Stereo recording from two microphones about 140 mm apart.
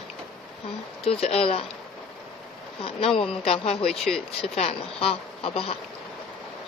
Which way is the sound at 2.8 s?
45° left (ahead or behind).